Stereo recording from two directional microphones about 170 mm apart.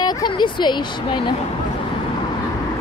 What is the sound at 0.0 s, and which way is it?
Speech, 25° left (ahead or behind).